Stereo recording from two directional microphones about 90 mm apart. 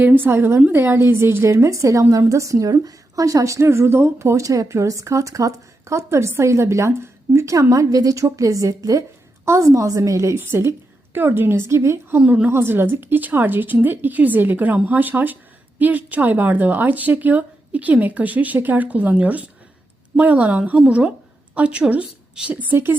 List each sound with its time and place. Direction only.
0.0 s a woman's voice: 20° right (ahead or behind)
12.2 s a woman's voice: 15° right (ahead or behind)
12.5 s a woman's voice: 25° right (ahead or behind)